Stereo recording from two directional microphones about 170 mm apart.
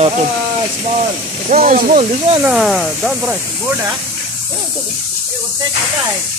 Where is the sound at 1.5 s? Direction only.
45° right (ahead or behind).